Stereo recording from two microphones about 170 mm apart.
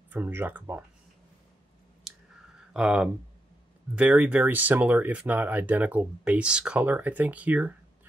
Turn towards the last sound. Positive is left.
turn(degrees=-10)  # may be behind; listen again after turning